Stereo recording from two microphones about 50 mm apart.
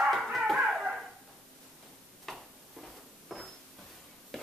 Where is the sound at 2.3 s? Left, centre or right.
Centre.